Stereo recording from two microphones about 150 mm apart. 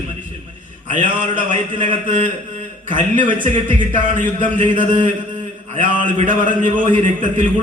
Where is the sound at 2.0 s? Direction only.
50° right (ahead or behind).